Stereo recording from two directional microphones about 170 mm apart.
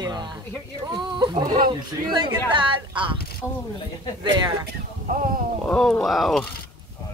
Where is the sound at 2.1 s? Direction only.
25° right (ahead or behind).